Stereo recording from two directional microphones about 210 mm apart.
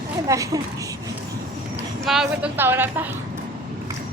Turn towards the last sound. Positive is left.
turn(degrees=-10)  # may be behind; listen again after turning